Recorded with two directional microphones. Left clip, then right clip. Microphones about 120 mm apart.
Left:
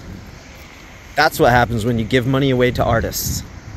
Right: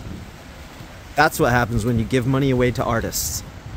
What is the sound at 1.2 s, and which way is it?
Speech, 5° right (ahead or behind).